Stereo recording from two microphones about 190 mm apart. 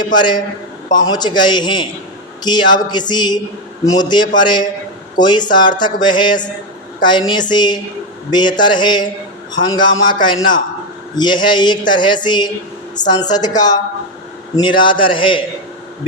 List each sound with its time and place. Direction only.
0.2 s a man's voice: 25° left (ahead or behind)